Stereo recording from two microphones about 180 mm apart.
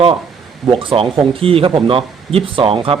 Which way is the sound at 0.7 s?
30° right (ahead or behind).